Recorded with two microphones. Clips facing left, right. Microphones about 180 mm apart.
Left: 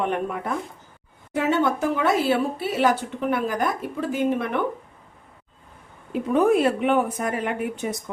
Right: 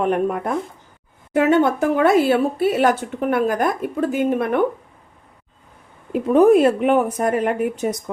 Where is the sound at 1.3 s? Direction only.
55° right (ahead or behind).